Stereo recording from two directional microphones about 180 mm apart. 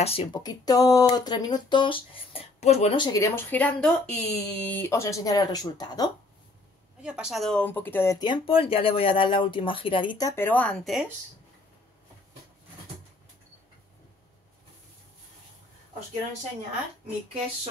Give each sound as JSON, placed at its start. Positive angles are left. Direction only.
{"t": 0.0, "sound": "speech", "side_deg": 30}
{"t": 3.1, "sound": "speech", "side_deg": 15}
{"t": 7.0, "sound": "speech", "side_deg": -5}